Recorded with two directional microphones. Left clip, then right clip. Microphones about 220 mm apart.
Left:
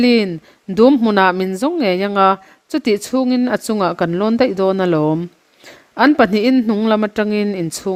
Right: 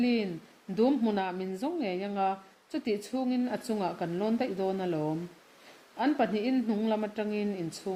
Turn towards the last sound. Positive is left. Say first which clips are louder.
# left 14 dB
turn(degrees=55)  # may be behind; listen again after turning